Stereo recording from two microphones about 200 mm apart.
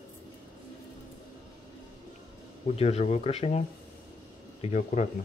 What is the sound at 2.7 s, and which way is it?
Speech, 30° left (ahead or behind).